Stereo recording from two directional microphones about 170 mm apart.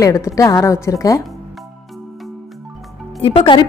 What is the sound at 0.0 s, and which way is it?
A woman's voice, 20° left (ahead or behind).